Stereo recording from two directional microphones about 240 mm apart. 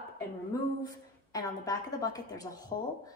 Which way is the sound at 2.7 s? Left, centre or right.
Left.